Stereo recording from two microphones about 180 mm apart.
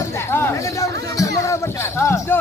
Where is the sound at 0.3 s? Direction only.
15° left (ahead or behind).